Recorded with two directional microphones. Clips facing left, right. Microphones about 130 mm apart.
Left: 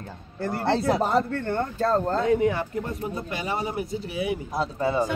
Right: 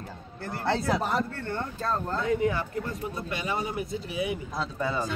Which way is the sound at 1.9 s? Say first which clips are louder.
Left 5 dB; 35° left (ahead or behind).